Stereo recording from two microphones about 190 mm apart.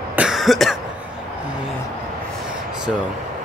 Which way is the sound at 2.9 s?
Centre (ahead or behind).